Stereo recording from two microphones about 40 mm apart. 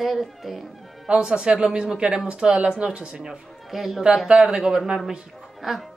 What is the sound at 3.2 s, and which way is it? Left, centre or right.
Speech, centre.